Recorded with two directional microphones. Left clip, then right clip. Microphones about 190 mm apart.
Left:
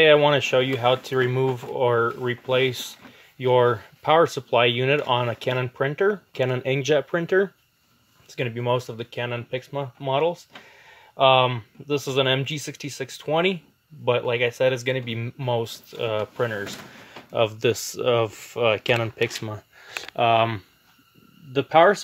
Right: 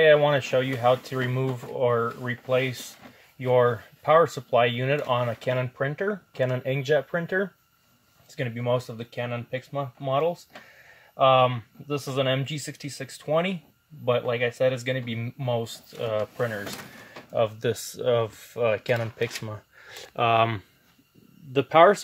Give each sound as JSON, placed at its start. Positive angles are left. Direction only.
{"t": 0.0, "sound": "speech", "side_deg": 50}
{"t": 19.8, "sound": "a sound", "side_deg": 20}
{"t": 20.2, "sound": "speech", "side_deg": 15}